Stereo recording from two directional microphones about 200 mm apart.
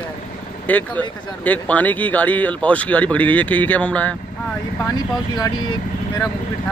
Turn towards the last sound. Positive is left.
turn(degrees=15)  # may be behind; listen again after turning